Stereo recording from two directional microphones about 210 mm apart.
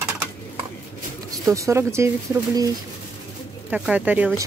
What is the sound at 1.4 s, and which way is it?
Speech, 15° right (ahead or behind).